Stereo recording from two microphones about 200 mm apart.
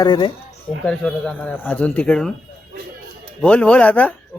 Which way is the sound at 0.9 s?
5° left (ahead or behind).